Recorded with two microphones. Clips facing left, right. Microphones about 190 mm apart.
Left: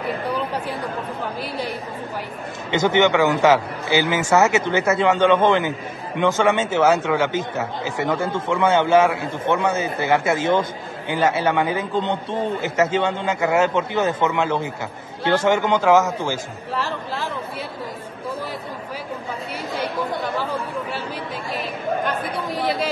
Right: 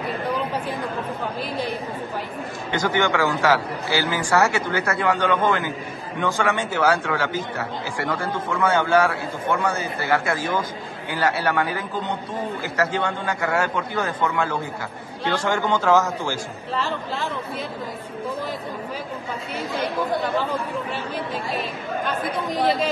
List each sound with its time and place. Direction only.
2.7 s a man's voice: 20° left (ahead or behind)